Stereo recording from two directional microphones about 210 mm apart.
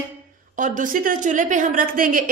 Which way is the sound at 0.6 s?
40° right (ahead or behind).